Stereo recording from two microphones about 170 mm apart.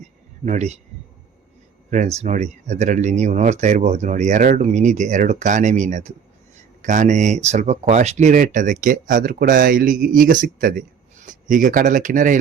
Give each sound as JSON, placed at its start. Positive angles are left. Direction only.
{"t": 0.4, "sound": "speech", "side_deg": -45}
{"t": 1.9, "sound": "speech", "side_deg": -45}